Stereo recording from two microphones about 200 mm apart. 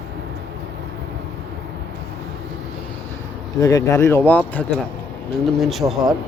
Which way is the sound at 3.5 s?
15° left (ahead or behind).